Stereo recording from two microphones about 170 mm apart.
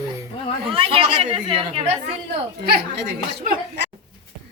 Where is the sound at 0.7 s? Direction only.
30° right (ahead or behind).